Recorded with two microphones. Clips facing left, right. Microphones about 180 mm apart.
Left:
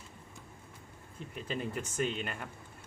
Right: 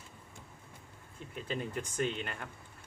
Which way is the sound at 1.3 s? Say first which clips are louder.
Even; centre (ahead or behind).